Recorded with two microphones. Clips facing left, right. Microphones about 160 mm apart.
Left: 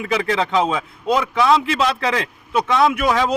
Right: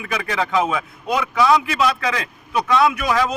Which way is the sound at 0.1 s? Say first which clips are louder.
Left 2 dB; 25° left (ahead or behind).